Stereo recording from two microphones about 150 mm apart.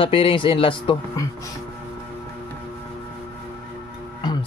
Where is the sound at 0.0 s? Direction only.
35° left (ahead or behind).